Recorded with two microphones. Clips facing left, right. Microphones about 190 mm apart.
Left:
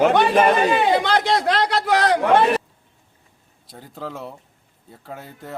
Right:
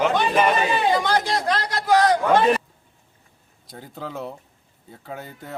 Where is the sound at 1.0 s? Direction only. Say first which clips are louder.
Left 3 dB; 65° left (ahead or behind).